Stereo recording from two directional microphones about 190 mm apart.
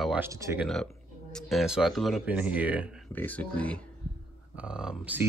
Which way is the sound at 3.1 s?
10° left (ahead or behind).